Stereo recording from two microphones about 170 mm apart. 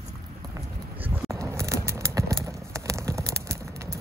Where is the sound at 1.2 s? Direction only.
20° right (ahead or behind).